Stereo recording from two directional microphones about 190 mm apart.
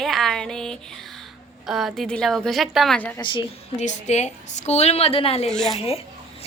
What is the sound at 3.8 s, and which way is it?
A woman's voice, 35° left (ahead or behind).